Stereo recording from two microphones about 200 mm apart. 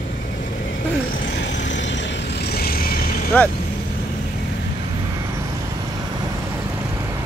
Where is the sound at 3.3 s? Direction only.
10° left (ahead or behind).